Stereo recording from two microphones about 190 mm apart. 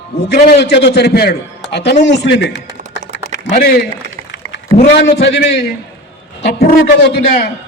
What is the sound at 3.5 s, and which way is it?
Speech, 50° left (ahead or behind).